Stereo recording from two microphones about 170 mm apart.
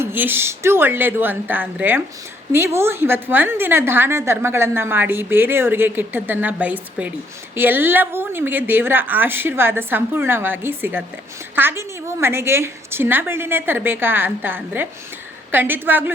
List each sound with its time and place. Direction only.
0.0 s a woman's voice: 10° right (ahead or behind)